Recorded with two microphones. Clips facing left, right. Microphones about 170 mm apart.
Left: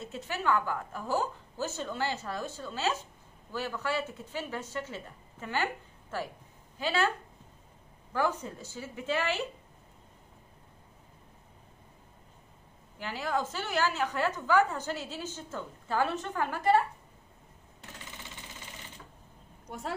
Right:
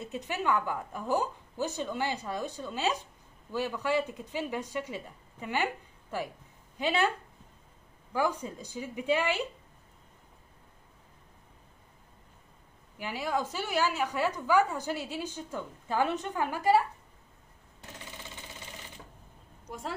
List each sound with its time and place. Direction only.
0.0 s a woman's voice: 15° right (ahead or behind)
8.1 s a woman's voice: 10° right (ahead or behind)
13.0 s a woman's voice: 10° right (ahead or behind)